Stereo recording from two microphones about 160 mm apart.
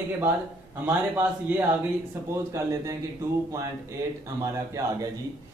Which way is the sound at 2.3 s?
20° right (ahead or behind).